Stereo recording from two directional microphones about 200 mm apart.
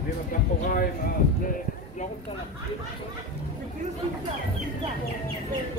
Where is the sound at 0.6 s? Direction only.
45° left (ahead or behind).